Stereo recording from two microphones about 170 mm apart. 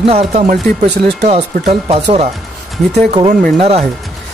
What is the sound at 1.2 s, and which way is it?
Speech, 40° right (ahead or behind).